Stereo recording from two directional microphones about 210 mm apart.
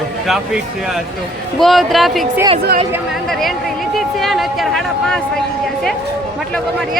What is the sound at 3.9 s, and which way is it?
Speech, centre (ahead or behind).